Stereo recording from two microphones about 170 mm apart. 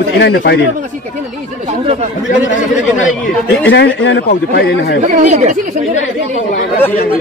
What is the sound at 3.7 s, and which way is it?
Speech, 90° left.